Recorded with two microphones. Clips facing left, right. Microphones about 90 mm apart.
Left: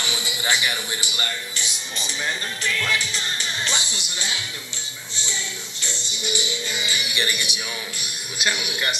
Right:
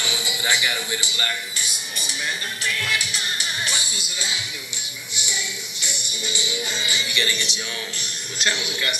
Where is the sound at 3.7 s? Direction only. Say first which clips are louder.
Left 2 dB; 25° left (ahead or behind).